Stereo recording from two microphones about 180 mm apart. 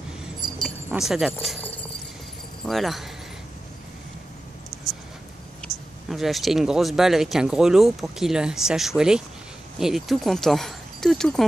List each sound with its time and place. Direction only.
0.4 s keys jangling: 25° right (ahead or behind)
0.9 s speech: centre (ahead or behind)
5.6 s speech: centre (ahead or behind)